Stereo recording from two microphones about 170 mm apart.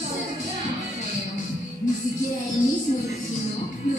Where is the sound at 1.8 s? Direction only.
50° left (ahead or behind).